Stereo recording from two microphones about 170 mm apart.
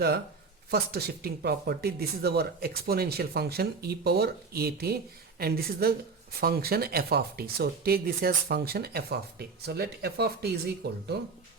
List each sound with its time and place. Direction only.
0.7 s speech: 65° right (ahead or behind)